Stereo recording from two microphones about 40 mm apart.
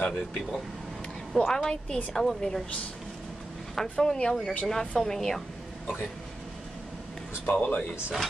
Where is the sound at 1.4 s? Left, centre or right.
Centre.